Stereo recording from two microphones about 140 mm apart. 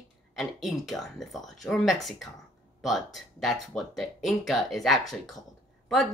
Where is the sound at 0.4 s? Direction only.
Centre (ahead or behind).